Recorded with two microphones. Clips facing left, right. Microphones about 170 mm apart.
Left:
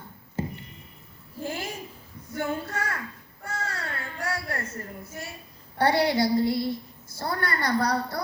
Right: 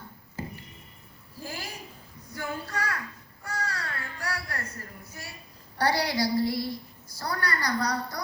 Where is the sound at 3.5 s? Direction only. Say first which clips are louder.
Left 1 dB; 25° left (ahead or behind).